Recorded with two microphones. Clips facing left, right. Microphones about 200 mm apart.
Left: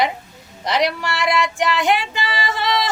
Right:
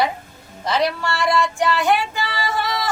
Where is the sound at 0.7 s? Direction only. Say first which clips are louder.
Even; 15° left (ahead or behind).